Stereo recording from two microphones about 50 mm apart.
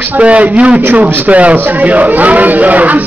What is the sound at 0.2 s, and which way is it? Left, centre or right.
A man's voice, right.